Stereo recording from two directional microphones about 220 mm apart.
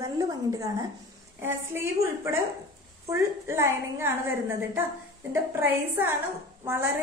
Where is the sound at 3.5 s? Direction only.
10° right (ahead or behind).